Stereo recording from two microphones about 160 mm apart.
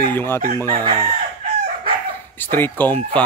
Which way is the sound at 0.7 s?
35° right (ahead or behind).